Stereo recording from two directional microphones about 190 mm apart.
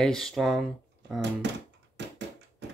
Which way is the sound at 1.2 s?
65° right (ahead or behind).